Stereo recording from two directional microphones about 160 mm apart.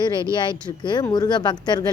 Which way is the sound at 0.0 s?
30° left (ahead or behind).